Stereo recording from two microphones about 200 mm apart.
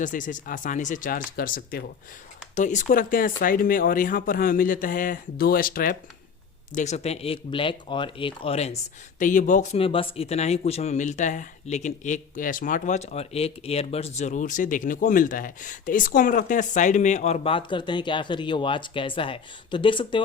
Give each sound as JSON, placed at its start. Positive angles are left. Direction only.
{"t": 0.0, "sound": "speech", "side_deg": 40}
{"t": 6.7, "sound": "speech", "side_deg": 35}